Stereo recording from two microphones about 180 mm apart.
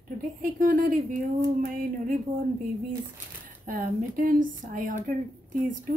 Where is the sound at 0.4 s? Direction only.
50° right (ahead or behind).